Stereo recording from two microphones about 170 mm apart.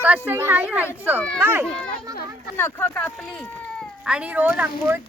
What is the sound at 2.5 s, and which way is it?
Speech, 10° left (ahead or behind).